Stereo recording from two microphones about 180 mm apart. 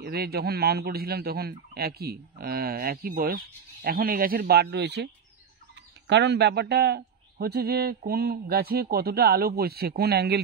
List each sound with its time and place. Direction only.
0.0 s speech: 60° right (ahead or behind)